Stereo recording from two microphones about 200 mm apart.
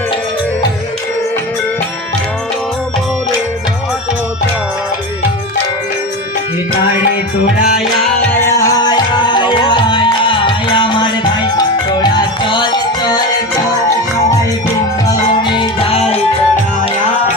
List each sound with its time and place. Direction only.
8.4 s music: 20° left (ahead or behind)
15.0 s music: 25° left (ahead or behind)